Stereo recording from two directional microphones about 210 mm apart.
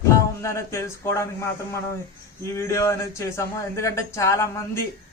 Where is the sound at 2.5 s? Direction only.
15° left (ahead or behind).